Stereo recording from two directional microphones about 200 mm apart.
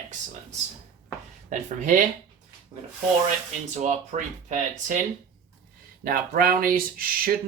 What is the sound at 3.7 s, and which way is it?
Speech, 35° right (ahead or behind).